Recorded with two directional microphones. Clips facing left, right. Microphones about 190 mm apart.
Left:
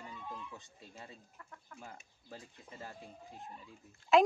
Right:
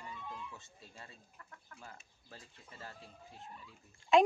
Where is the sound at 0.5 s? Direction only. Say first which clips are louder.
Left 2 dB; 15° left (ahead or behind).